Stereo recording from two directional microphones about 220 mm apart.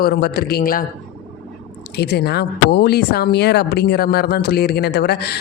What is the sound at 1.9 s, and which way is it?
A man's voice, 50° left (ahead or behind).